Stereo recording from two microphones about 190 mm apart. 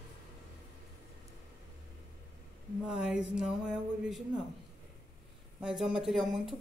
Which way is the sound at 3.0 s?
5° right (ahead or behind).